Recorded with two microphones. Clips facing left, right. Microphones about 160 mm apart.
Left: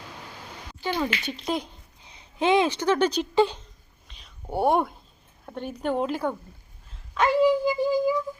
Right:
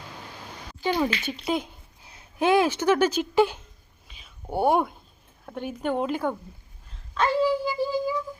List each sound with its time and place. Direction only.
0.8 s a child's voice: 10° right (ahead or behind)
4.1 s a sound: 5° right (ahead or behind)
5.5 s a woman's voice: 5° right (ahead or behind)
7.1 s speech: 15° left (ahead or behind)